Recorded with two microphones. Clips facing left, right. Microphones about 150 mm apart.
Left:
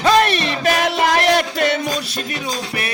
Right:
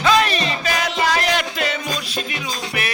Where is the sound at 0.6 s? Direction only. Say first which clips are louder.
Left 6 dB; 55° left (ahead or behind).